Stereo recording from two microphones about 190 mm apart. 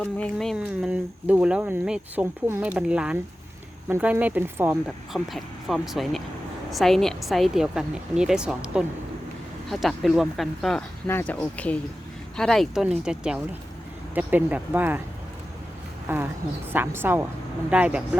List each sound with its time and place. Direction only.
0.0 s speech: 5° left (ahead or behind)
16.0 s speech: 10° right (ahead or behind)